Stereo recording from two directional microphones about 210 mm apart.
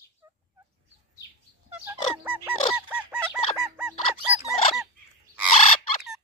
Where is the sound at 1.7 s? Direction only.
5° right (ahead or behind).